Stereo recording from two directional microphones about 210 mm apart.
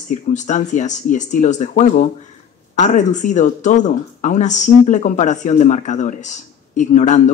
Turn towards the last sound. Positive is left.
turn(degrees=35)  # may be behind; listen again after turning